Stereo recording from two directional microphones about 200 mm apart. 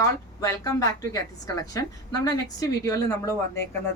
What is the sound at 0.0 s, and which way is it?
A woman's voice, 15° left (ahead or behind).